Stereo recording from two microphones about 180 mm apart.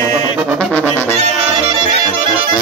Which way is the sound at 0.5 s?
5° left (ahead or behind).